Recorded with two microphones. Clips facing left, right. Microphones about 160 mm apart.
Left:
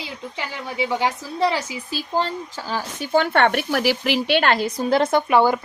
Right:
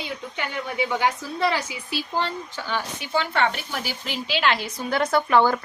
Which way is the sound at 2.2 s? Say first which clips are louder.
Left 5 dB; 40° left (ahead or behind).